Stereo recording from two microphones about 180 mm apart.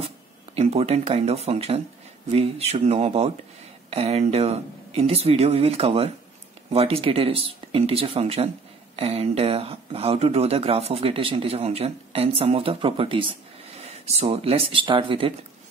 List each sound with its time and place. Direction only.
0.6 s speech: 35° right (ahead or behind)